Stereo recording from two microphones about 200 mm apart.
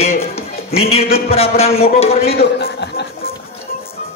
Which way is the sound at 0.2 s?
30° left (ahead or behind).